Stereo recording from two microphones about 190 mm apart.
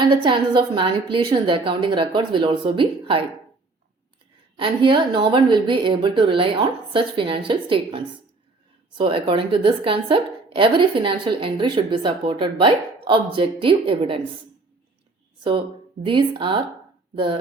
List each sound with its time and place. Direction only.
0.0 s a woman's voice: 25° right (ahead or behind)
4.5 s a woman's voice: 25° right (ahead or behind)
16.0 s a woman's voice: 25° right (ahead or behind)